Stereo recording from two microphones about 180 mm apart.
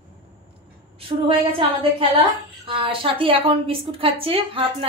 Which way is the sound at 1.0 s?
30° right (ahead or behind).